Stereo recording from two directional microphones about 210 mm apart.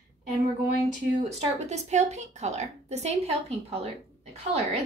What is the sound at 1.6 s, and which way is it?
A woman's voice, 35° right (ahead or behind).